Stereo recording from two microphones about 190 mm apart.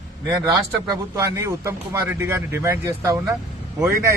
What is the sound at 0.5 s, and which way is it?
Speech, 20° right (ahead or behind).